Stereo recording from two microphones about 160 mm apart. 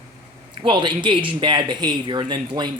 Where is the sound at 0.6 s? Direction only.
30° right (ahead or behind).